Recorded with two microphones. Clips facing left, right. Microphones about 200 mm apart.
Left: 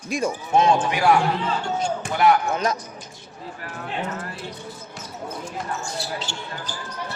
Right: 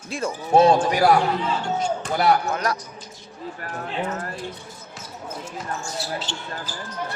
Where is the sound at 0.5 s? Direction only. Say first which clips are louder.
Right 4 dB; 35° right (ahead or behind).